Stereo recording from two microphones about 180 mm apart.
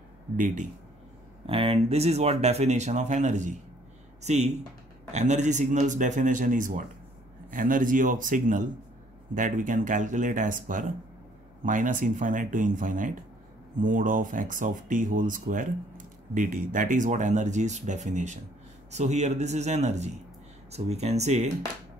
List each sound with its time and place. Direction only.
1.4 s speech: 30° right (ahead or behind)